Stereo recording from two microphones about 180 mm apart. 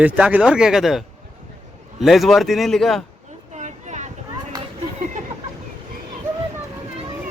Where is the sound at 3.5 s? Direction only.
40° right (ahead or behind).